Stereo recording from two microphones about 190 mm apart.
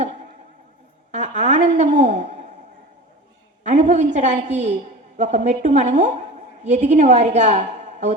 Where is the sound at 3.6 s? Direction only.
40° right (ahead or behind).